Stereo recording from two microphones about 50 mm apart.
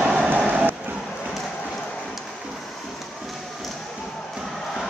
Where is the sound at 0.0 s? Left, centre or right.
Centre.